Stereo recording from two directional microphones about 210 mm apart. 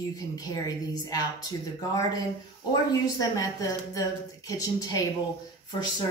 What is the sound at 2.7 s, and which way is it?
A woman's voice, 15° left (ahead or behind).